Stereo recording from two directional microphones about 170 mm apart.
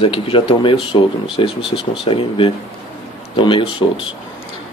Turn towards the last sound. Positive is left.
turn(degrees=30)  # may be behind; listen again after turning